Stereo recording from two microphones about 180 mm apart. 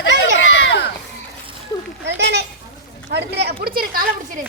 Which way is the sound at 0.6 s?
75° left (ahead or behind).